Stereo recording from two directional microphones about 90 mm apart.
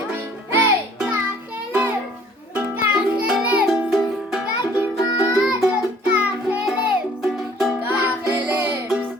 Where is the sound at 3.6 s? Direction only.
Centre (ahead or behind).